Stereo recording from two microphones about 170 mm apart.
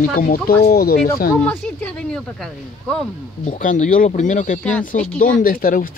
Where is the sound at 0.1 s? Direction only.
55° left (ahead or behind).